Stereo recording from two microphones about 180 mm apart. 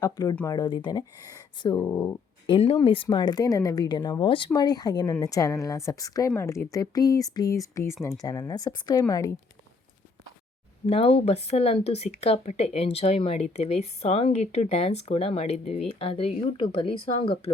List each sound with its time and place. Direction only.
0.0 s a woman's voice: 20° left (ahead or behind)
2.5 s a woman's voice: 30° left (ahead or behind)
10.8 s speech: 35° left (ahead or behind)